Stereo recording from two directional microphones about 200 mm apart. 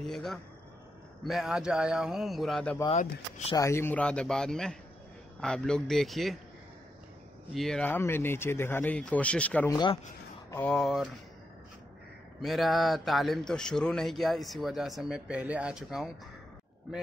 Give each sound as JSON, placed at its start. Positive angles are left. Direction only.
{"t": 0.0, "sound": "speech", "side_deg": 0}
{"t": 3.0, "sound": "speech", "side_deg": 35}
{"t": 3.5, "sound": "speech", "side_deg": 15}
{"t": 7.5, "sound": "speech", "side_deg": 0}
{"t": 12.4, "sound": "speech", "side_deg": 0}